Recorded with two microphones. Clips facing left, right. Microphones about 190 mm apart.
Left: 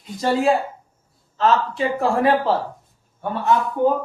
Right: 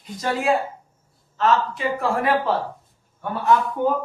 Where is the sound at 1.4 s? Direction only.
30° left (ahead or behind).